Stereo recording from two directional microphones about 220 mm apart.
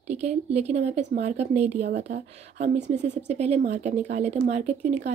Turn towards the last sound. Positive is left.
turn(degrees=-30)  # may be behind; listen again after turning